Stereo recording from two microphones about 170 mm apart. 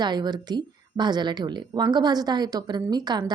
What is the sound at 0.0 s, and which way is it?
A woman's voice, 25° right (ahead or behind).